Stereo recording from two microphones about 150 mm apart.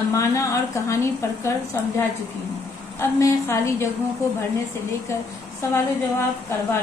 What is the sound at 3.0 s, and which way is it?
Speech, 15° left (ahead or behind).